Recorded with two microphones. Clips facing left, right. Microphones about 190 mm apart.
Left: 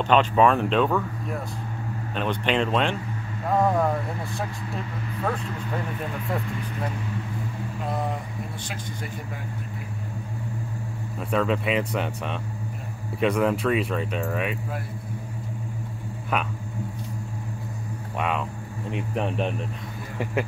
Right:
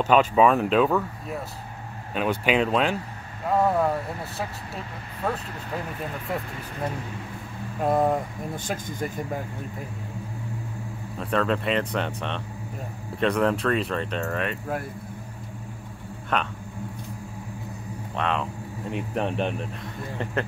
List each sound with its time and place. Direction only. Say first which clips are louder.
0.0 s speech: right 1 dB; 5° right (ahead or behind)
2.1 s speech: right 2 dB; 5° right (ahead or behind)
7.8 s speech: right 8 dB; 50° right (ahead or behind)
11.1 s speech: even; 5° left (ahead or behind)
16.3 s speech: right 1 dB; 5° left (ahead or behind)
18.1 s speech: even; 5° left (ahead or behind)